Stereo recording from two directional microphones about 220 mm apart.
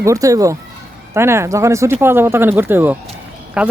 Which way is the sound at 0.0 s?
15° right (ahead or behind).